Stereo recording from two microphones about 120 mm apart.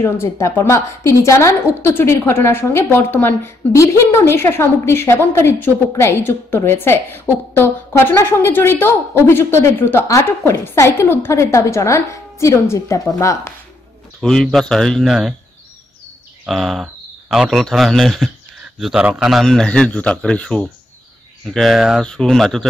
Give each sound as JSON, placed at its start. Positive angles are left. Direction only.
{"t": 0.0, "sound": "a woman's voice", "side_deg": 20}
{"t": 14.2, "sound": "speech", "side_deg": 5}
{"t": 16.4, "sound": "a man's voice", "side_deg": 0}